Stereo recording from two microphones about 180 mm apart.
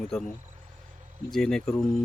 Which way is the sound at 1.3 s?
5° left (ahead or behind).